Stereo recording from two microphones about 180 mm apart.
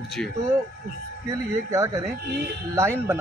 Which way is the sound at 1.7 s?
15° right (ahead or behind).